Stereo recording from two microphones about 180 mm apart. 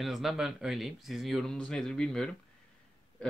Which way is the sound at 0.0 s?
Centre (ahead or behind).